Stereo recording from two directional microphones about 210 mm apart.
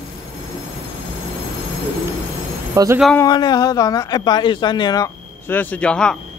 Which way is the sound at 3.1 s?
20° left (ahead or behind).